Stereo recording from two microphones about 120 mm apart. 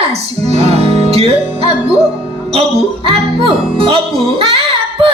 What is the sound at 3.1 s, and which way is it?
Music, 50° right (ahead or behind).